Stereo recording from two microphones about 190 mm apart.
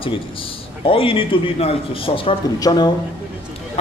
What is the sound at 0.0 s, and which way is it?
A man's voice, 30° left (ahead or behind).